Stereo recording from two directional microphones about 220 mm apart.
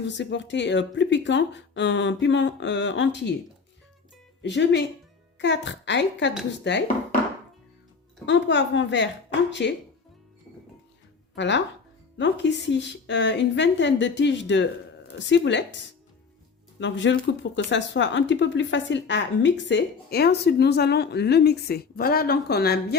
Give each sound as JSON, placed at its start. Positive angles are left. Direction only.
{"t": 0.0, "sound": "speech", "side_deg": 55}
{"t": 4.4, "sound": "speech", "side_deg": 50}
{"t": 8.3, "sound": "speech", "side_deg": 55}
{"t": 11.3, "sound": "speech", "side_deg": 55}
{"t": 16.8, "sound": "speech", "side_deg": 55}